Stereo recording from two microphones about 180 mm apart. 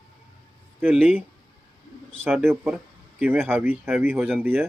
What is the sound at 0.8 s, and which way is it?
Speech, 10° right (ahead or behind).